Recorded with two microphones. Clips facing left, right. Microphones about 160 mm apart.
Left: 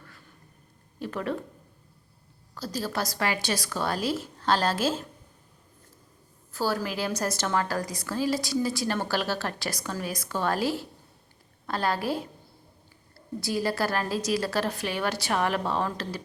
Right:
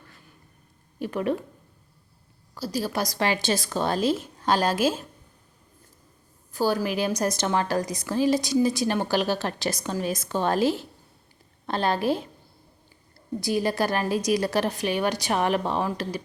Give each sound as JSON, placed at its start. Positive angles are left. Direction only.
{"t": 0.9, "sound": "speech", "side_deg": -15}
{"t": 2.6, "sound": "a woman's voice", "side_deg": -10}
{"t": 3.2, "sound": "a woman's voice", "side_deg": -25}
{"t": 6.5, "sound": "a woman's voice", "side_deg": -15}
{"t": 13.4, "sound": "a woman's voice", "side_deg": -20}